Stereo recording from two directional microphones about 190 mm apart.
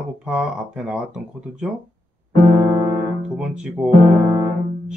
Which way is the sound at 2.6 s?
20° right (ahead or behind).